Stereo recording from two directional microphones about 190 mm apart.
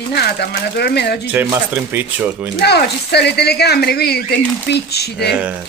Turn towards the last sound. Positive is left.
turn(degrees=-5)  # may be behind; listen again after turning